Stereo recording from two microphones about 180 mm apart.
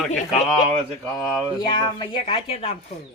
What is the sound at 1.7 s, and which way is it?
Speech, 25° left (ahead or behind).